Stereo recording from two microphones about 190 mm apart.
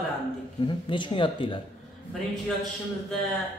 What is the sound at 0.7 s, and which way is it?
Speech, 25° left (ahead or behind).